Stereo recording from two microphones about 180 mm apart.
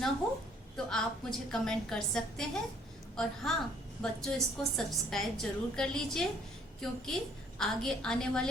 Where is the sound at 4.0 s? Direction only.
5° left (ahead or behind).